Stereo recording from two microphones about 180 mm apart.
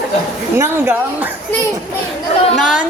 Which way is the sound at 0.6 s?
15° right (ahead or behind).